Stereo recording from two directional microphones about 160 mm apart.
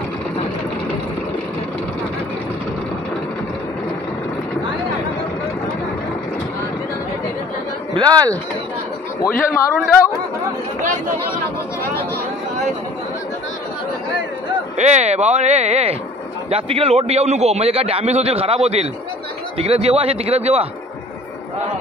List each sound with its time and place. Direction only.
7.9 s speech: 25° right (ahead or behind)
9.2 s speech: 20° left (ahead or behind)
14.8 s a man's voice: 45° right (ahead or behind)